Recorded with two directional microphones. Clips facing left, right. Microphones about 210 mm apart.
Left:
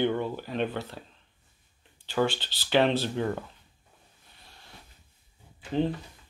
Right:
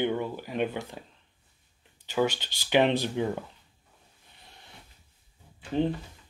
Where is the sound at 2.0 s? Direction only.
10° right (ahead or behind).